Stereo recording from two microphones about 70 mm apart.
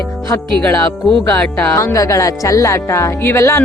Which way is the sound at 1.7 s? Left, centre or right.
Left.